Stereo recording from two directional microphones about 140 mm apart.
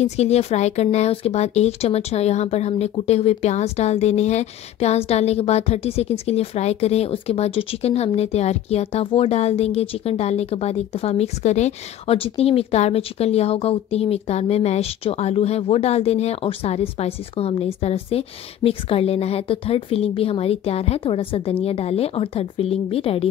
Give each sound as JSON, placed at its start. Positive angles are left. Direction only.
{"t": 0.0, "sound": "speech", "side_deg": 50}